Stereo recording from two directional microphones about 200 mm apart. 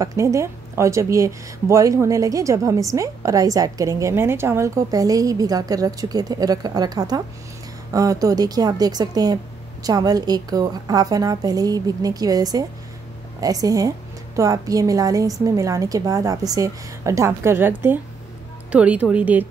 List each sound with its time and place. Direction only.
0.0 s a woman's voice: 15° right (ahead or behind)